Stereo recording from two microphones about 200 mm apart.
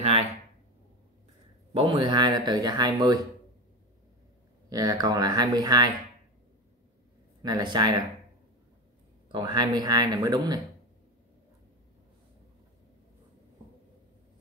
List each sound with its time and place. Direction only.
0.0 s a sound: 30° right (ahead or behind)
1.7 s speech: 25° right (ahead or behind)
4.6 s speech: 15° right (ahead or behind)
7.4 s speech: 20° right (ahead or behind)
9.3 s speech: 20° right (ahead or behind)